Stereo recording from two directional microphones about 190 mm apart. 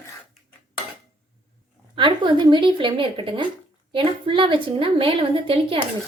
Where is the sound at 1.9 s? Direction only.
25° right (ahead or behind).